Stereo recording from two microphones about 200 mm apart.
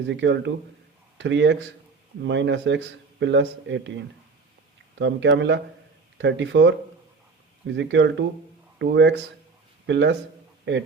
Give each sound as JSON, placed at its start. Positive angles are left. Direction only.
{"t": 0.1, "sound": "speech", "side_deg": -65}
{"t": 7.8, "sound": "speech", "side_deg": -65}